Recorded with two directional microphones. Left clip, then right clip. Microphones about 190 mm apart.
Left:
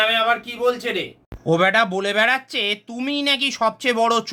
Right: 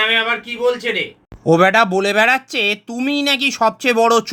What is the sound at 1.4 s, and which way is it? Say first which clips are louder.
Speech: right 5 dB; 25° right (ahead or behind).